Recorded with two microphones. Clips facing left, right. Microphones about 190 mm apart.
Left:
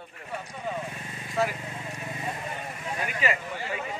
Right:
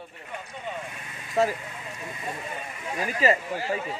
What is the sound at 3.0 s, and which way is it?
Speech, 35° right (ahead or behind).